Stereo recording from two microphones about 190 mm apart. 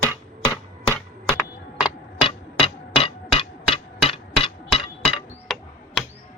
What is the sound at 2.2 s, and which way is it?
Music, 25° left (ahead or behind).